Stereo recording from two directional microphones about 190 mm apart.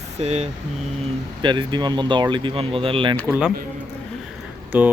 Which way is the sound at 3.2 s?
10° right (ahead or behind).